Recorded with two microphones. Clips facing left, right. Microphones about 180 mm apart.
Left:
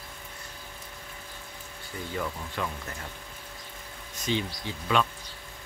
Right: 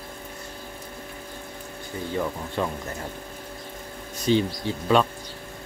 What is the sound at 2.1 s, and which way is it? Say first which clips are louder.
Speech: right 6 dB; 25° right (ahead or behind).